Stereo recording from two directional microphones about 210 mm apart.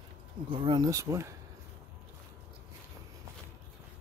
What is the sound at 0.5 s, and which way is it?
Speech, 20° right (ahead or behind).